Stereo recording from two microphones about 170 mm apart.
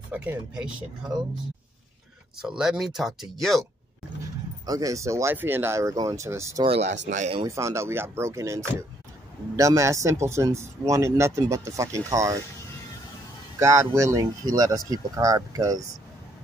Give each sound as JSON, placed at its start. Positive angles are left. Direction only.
{"t": 0.1, "sound": "speech", "side_deg": -10}
{"t": 2.4, "sound": "speech", "side_deg": -5}
{"t": 4.6, "sound": "speech", "side_deg": -20}
{"t": 6.6, "sound": "speech", "side_deg": -40}
{"t": 7.4, "sound": "speech", "side_deg": -15}
{"t": 13.6, "sound": "speech", "side_deg": -15}